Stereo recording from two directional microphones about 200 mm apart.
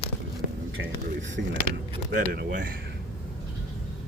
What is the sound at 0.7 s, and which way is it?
Speech, 75° right (ahead or behind).